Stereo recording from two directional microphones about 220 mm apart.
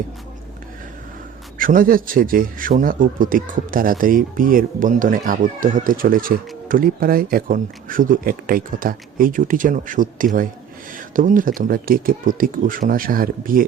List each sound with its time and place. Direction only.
1.5 s a man's voice: 40° right (ahead or behind)